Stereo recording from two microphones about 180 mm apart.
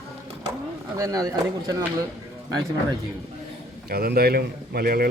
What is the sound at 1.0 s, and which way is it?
Speech, 20° right (ahead or behind).